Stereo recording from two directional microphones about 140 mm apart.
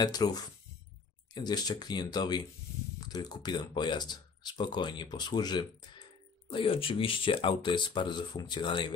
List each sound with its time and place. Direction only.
0.0 s speech: 30° left (ahead or behind)